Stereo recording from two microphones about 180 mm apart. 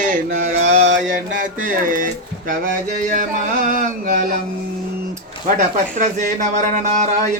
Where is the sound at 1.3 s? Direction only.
50° right (ahead or behind).